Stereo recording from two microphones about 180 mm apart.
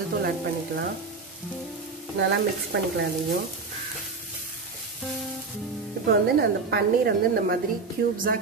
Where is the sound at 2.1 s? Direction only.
75° right (ahead or behind).